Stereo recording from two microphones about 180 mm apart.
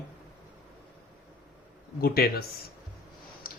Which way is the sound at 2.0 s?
55° left (ahead or behind).